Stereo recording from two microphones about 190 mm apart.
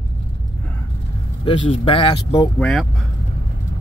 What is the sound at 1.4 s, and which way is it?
Speech, 25° left (ahead or behind).